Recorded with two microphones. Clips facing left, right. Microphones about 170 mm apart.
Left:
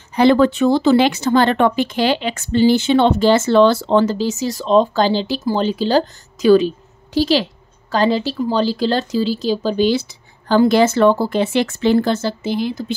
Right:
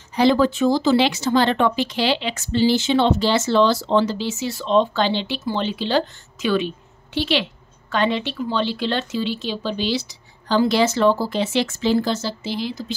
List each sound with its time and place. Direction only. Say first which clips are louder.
0.1 s speech: left 4 dB; 60° left (ahead or behind)